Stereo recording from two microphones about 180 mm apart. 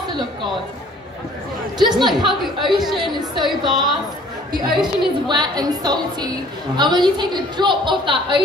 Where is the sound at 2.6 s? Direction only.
25° right (ahead or behind).